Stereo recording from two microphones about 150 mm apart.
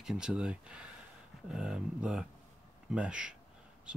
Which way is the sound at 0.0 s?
5° right (ahead or behind).